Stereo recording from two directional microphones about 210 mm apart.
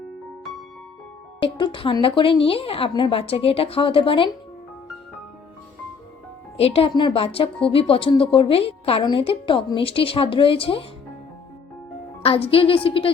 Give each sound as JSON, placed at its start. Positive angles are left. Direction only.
{"t": 1.4, "sound": "a woman's voice", "side_deg": 25}
{"t": 6.6, "sound": "a woman's voice", "side_deg": 30}
{"t": 12.2, "sound": "a woman's voice", "side_deg": 25}